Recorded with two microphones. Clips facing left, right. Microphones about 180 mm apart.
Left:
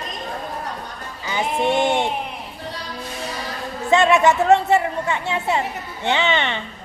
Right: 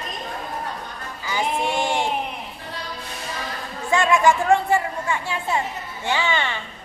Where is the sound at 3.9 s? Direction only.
20° left (ahead or behind).